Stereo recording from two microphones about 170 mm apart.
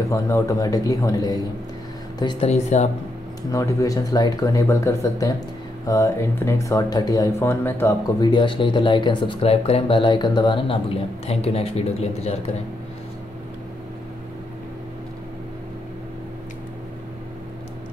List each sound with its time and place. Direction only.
0.1 s speech: 20° left (ahead or behind)
2.4 s speech: 40° left (ahead or behind)
3.5 s speech: 20° left (ahead or behind)
8.2 s speech: 25° left (ahead or behind)